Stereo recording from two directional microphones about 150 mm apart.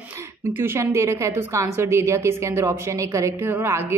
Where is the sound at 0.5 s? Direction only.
15° right (ahead or behind).